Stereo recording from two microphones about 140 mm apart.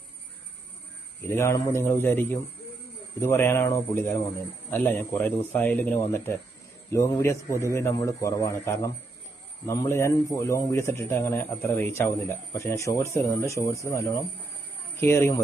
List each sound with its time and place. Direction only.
1.3 s speech: 20° left (ahead or behind)